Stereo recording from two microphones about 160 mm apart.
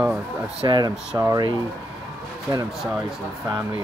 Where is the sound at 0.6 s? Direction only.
30° right (ahead or behind).